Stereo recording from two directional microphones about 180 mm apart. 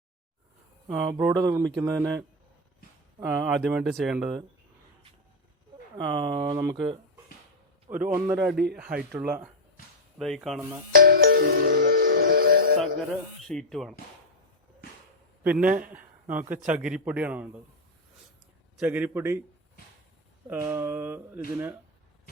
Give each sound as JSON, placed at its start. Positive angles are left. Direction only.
{"t": 0.9, "sound": "speech", "side_deg": -10}
{"t": 6.0, "sound": "speech", "side_deg": -25}
{"t": 7.9, "sound": "speech", "side_deg": -10}
{"t": 10.2, "sound": "speech", "side_deg": 0}
{"t": 10.9, "sound": "music", "side_deg": -55}
{"t": 13.5, "sound": "speech", "side_deg": 0}
{"t": 15.4, "sound": "speech", "side_deg": -5}
{"t": 18.8, "sound": "speech", "side_deg": -10}
{"t": 20.5, "sound": "speech", "side_deg": -10}